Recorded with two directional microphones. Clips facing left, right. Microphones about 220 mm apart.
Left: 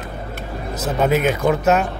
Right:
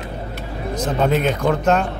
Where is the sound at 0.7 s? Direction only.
5° left (ahead or behind).